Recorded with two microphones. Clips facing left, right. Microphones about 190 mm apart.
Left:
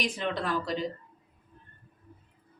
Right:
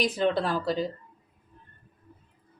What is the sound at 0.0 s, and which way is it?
Speech, 35° right (ahead or behind).